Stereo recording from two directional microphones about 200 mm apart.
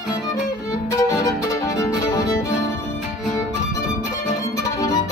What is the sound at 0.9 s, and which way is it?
Violin, 15° left (ahead or behind).